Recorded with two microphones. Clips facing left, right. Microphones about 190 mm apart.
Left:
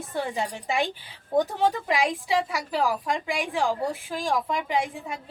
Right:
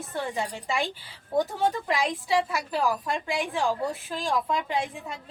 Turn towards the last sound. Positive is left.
turn(degrees=15)  # may be behind; listen again after turning